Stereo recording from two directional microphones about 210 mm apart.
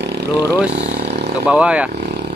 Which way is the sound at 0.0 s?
55° right (ahead or behind).